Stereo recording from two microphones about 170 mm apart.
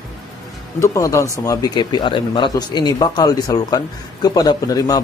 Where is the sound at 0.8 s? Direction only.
20° left (ahead or behind).